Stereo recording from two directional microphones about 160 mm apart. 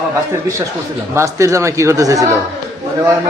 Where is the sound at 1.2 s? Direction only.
20° right (ahead or behind).